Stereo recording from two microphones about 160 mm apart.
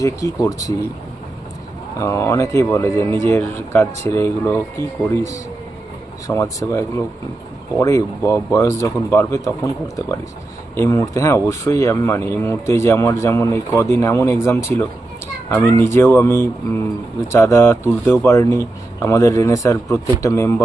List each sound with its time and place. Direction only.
0.0 s speech: 20° left (ahead or behind)
2.0 s speech: 15° left (ahead or behind)
10.8 s speech: 20° left (ahead or behind)